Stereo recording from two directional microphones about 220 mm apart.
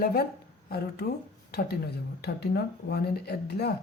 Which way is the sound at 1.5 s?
45° left (ahead or behind).